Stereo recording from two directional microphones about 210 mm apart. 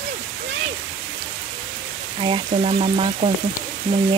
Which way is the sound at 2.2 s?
25° right (ahead or behind).